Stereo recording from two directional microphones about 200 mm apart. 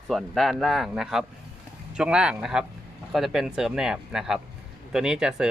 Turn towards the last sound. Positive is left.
turn(degrees=-5)  # may be behind; listen again after turning